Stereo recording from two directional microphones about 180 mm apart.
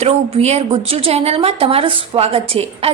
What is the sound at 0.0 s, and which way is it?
A woman's voice, 35° right (ahead or behind).